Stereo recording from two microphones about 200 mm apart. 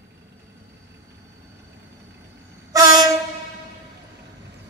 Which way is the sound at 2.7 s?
15° right (ahead or behind).